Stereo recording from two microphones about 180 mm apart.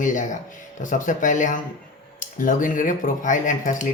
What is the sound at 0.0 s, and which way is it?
Speech, 45° left (ahead or behind).